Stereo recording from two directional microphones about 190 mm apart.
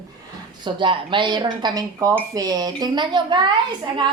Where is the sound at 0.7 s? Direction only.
25° right (ahead or behind).